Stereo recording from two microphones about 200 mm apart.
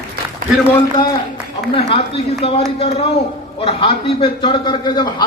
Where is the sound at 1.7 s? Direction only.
30° left (ahead or behind).